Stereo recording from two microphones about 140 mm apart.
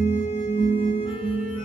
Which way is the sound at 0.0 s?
45° left (ahead or behind).